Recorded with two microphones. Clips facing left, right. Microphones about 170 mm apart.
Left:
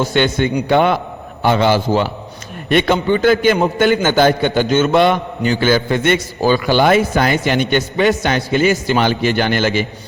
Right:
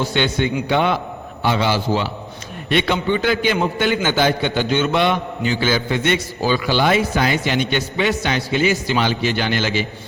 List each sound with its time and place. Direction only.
0.0 s a man's voice: 50° left (ahead or behind)